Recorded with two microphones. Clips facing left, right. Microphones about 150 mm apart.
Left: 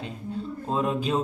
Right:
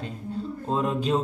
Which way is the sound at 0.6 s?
Centre (ahead or behind).